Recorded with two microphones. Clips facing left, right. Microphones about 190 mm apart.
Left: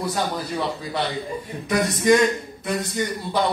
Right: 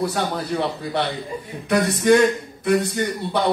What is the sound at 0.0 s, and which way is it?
A man's voice, 60° right (ahead or behind).